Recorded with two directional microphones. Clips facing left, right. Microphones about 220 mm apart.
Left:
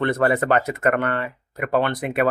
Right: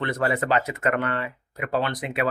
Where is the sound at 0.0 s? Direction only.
55° left (ahead or behind).